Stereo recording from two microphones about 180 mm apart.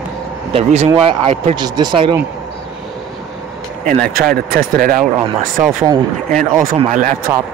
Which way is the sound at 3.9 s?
55° right (ahead or behind).